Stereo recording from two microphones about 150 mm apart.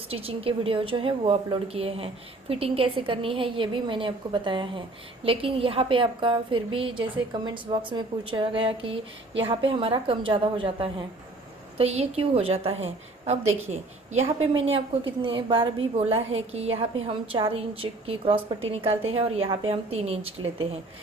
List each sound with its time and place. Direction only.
0.1 s a woman's voice: 40° right (ahead or behind)